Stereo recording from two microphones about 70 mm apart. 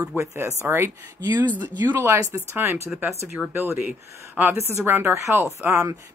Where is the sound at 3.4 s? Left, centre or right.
Centre.